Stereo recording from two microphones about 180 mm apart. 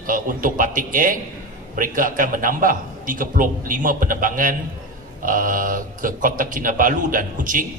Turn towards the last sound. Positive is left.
turn(degrees=-50)  # may be behind; listen again after turning